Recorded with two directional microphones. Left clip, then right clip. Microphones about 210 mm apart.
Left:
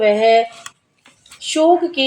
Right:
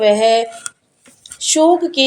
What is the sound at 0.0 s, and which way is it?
Speech, 30° right (ahead or behind).